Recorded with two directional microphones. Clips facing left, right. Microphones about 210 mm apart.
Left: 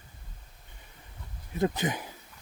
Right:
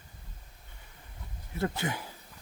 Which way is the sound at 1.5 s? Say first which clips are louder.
Left 4 dB; 20° left (ahead or behind).